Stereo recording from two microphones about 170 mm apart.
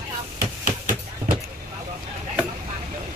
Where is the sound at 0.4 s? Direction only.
55° right (ahead or behind).